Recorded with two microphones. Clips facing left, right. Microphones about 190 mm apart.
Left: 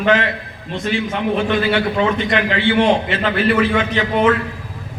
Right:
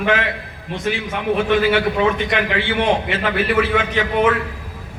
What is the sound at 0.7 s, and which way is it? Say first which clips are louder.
Speech: left 1 dB; 15° right (ahead or behind).